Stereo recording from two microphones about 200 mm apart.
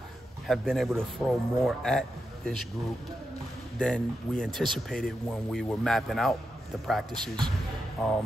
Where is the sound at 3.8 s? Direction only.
5° left (ahead or behind).